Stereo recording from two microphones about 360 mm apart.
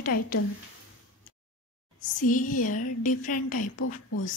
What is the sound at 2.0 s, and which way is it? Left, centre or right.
Speech, left.